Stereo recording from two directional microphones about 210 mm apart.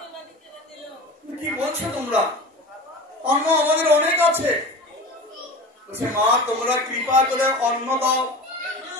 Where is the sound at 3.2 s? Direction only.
10° right (ahead or behind).